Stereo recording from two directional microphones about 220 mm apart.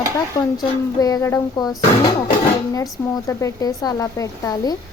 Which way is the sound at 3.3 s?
15° left (ahead or behind).